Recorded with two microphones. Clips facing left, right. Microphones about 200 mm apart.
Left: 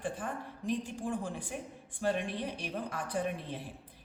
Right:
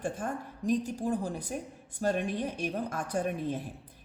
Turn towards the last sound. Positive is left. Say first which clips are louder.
# right 4 dB
turn(degrees=-45)  # may be behind; listen again after turning